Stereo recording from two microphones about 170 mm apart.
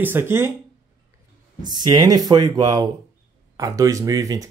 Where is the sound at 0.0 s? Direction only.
15° right (ahead or behind).